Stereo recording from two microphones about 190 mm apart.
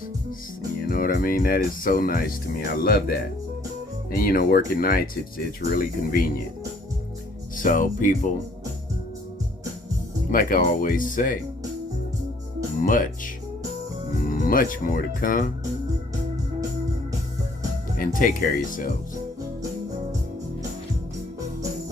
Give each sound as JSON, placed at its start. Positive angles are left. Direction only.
{"t": 0.9, "sound": "speech", "side_deg": 50}
{"t": 7.5, "sound": "speech", "side_deg": 45}
{"t": 10.3, "sound": "speech", "side_deg": 45}
{"t": 12.8, "sound": "speech", "side_deg": 45}
{"t": 17.9, "sound": "speech", "side_deg": 45}